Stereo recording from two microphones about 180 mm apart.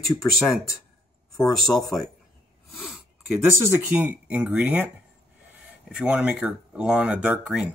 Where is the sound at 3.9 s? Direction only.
10° right (ahead or behind).